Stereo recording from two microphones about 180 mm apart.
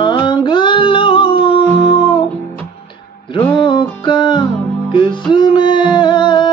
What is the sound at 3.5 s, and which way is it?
Music, 25° left (ahead or behind).